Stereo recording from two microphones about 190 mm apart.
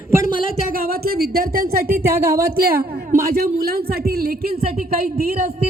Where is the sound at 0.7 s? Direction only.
55° right (ahead or behind).